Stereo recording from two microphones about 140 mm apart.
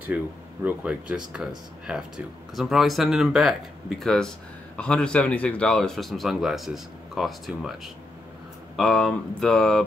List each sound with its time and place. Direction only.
0.1 s speech: 10° right (ahead or behind)